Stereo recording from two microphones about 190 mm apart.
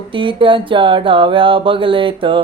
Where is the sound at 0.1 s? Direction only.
25° right (ahead or behind).